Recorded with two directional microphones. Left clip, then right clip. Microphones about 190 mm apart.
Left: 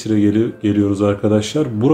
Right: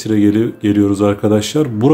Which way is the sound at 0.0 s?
25° right (ahead or behind).